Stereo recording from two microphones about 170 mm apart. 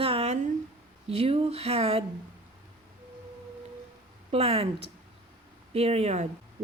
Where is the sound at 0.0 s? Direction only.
35° right (ahead or behind).